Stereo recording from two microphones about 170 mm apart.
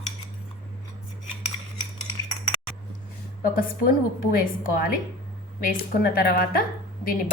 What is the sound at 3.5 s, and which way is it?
A woman's voice, 60° left (ahead or behind).